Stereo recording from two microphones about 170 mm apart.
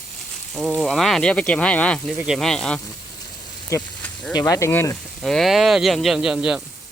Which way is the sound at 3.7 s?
15° left (ahead or behind).